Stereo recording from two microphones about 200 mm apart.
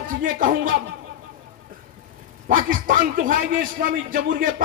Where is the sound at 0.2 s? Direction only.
45° right (ahead or behind).